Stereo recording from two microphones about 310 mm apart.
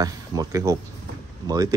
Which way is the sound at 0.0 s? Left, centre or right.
Centre.